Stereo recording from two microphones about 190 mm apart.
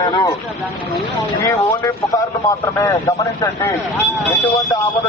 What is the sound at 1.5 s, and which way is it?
A man's voice, 15° left (ahead or behind).